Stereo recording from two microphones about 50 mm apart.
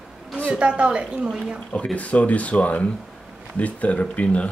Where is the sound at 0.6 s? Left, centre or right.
Right.